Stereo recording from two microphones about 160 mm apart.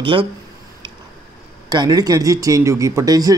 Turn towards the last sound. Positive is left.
turn(degrees=-25)  # may be behind; listen again after turning